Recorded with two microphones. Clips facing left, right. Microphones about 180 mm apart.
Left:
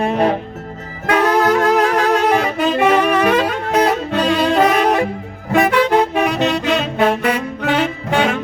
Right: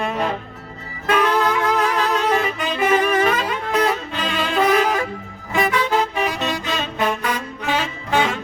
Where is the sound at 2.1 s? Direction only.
70° left (ahead or behind).